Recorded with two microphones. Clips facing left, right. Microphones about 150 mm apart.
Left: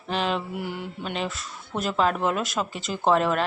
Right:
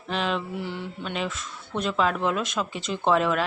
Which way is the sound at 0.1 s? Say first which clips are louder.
Left 1 dB; centre (ahead or behind).